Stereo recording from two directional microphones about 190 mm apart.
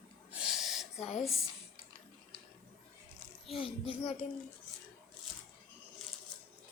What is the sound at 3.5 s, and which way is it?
Speech, 30° left (ahead or behind).